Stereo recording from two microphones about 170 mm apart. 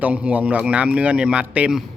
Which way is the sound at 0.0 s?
10° right (ahead or behind).